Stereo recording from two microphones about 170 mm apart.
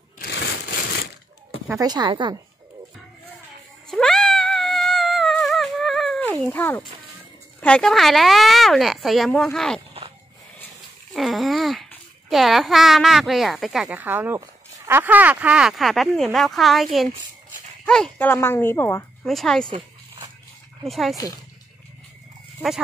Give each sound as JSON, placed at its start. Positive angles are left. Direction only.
{"t": 0.2, "sound": "a sound", "side_deg": 90}
{"t": 1.8, "sound": "speech", "side_deg": -25}
{"t": 3.9, "sound": "cat", "side_deg": 0}
{"t": 6.4, "sound": "speech", "side_deg": 10}
{"t": 11.1, "sound": "a sound", "side_deg": 0}
{"t": 12.3, "sound": "speech", "side_deg": 0}
{"t": 19.2, "sound": "speech", "side_deg": 0}
{"t": 20.8, "sound": "speech", "side_deg": 0}